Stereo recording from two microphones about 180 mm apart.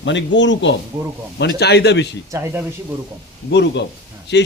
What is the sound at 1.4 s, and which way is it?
Speech, 65° left (ahead or behind).